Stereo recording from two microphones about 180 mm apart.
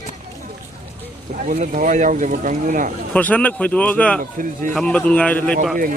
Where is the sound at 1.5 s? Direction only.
45° right (ahead or behind).